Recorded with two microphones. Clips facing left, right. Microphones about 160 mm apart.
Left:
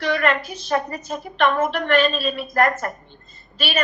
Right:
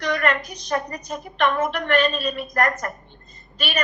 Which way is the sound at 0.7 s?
30° left (ahead or behind).